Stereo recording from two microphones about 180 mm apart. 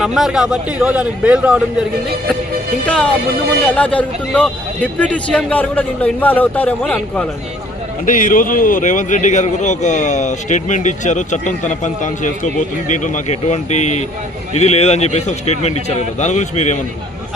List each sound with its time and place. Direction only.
0.0 s a man's voice: centre (ahead or behind)
2.8 s a man's voice: 5° left (ahead or behind)
8.0 s a man's voice: 45° left (ahead or behind)